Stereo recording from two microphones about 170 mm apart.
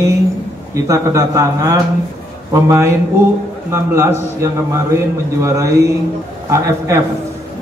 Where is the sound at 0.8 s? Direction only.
20° right (ahead or behind).